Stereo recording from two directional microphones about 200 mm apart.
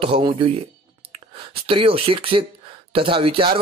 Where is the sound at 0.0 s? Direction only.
25° right (ahead or behind).